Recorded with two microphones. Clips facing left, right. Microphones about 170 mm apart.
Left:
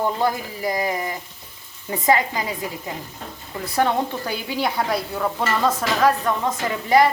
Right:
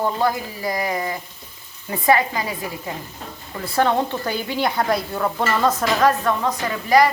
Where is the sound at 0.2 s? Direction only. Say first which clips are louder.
Right 1 dB; 20° left (ahead or behind).